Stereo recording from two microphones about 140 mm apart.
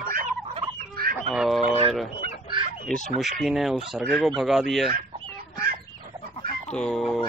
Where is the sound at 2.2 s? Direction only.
80° right.